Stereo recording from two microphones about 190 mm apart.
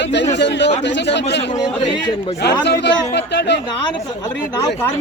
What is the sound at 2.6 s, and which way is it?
Speech, 65° left (ahead or behind).